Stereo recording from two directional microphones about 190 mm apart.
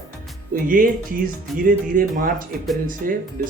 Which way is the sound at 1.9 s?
45° right (ahead or behind).